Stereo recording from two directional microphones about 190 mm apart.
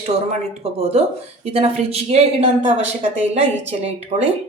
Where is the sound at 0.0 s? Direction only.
30° right (ahead or behind).